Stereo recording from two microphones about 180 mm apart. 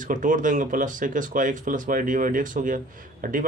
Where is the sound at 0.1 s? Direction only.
45° right (ahead or behind).